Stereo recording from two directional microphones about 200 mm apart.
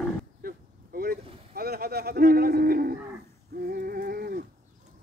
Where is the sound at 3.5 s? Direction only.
50° right (ahead or behind).